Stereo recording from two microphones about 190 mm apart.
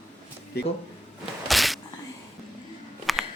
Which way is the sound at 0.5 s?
55° left (ahead or behind).